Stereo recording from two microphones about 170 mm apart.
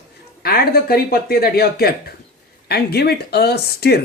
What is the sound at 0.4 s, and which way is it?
Speech, 65° left (ahead or behind).